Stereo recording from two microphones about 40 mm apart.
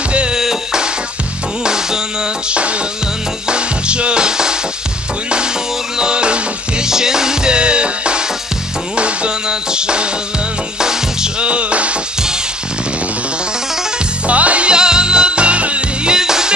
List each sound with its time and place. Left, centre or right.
0.3 s music: centre
2.5 s music: right
5.9 s music: right
6.9 s music: centre
11.4 s music: right
14.2 s music: right
16.1 s music: centre